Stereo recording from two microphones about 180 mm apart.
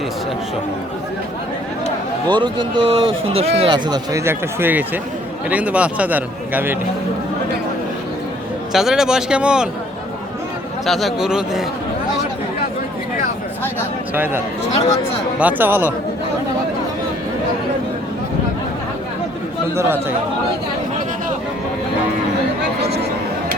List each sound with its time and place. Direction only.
2.4 s a man's voice: 25° right (ahead or behind); by 6.7 s 10° right (ahead or behind)
8.7 s speech: centre (ahead or behind)
10.8 s speech: centre (ahead or behind)
14.1 s a man's voice: 10° right (ahead or behind)
19.7 s a man's voice: 10° right (ahead or behind)